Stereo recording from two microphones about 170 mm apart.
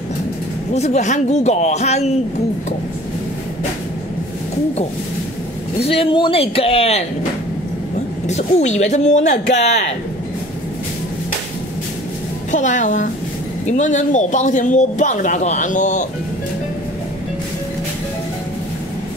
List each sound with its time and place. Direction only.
0.7 s a man's voice: 40° left (ahead or behind)
5.8 s a man's voice: 35° left (ahead or behind)
8.3 s speech: 45° left (ahead or behind)
12.4 s speech: 45° left (ahead or behind)